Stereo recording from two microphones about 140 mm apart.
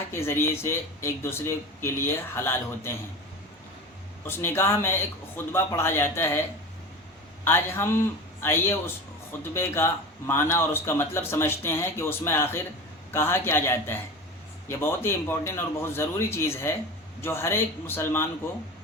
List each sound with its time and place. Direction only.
0.1 s a man's voice: 20° left (ahead or behind)
4.3 s a man's voice: 15° left (ahead or behind)
7.4 s a man's voice: 15° left (ahead or behind)